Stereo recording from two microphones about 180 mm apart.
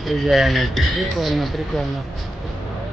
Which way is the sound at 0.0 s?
Centre (ahead or behind).